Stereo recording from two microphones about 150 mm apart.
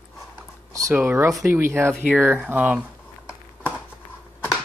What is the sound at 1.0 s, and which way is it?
Speech, 15° right (ahead or behind).